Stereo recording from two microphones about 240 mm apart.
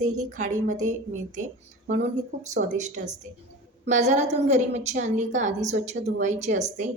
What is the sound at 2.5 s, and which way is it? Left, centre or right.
A woman's voice, right.